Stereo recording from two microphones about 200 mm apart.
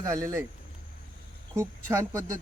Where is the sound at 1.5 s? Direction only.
15° right (ahead or behind).